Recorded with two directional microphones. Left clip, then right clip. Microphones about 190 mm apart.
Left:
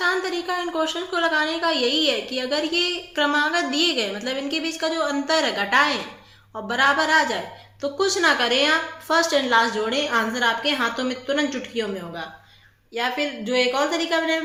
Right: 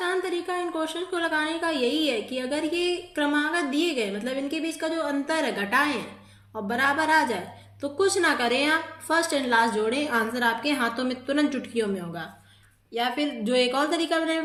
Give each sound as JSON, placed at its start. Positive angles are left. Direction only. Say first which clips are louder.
{"t": 0.0, "sound": "a woman's voice", "louder": "left 4 dB", "side_deg": -15}